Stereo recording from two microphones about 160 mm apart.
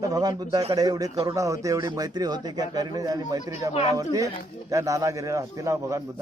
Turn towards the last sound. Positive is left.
turn(degrees=-20)  # may be behind; listen again after turning